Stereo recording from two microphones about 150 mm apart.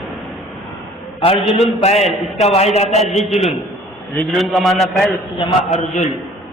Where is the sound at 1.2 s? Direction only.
40° left (ahead or behind).